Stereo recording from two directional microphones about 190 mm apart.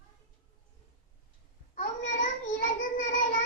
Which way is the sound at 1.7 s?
45° left (ahead or behind).